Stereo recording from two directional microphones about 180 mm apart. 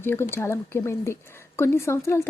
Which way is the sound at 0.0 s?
15° left (ahead or behind).